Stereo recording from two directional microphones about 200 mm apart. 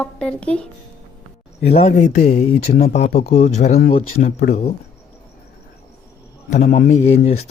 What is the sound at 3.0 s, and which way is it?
Speech, 35° left (ahead or behind).